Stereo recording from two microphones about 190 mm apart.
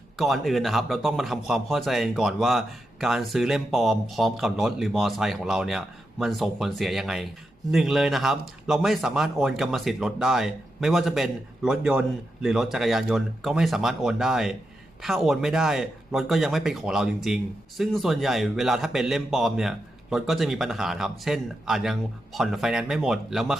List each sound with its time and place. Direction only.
0.2 s a man's voice: centre (ahead or behind)